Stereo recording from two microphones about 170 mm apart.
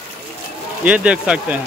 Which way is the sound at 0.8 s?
10° right (ahead or behind).